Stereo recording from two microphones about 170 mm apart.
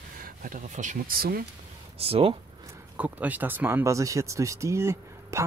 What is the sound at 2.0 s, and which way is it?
Speech, 35° right (ahead or behind).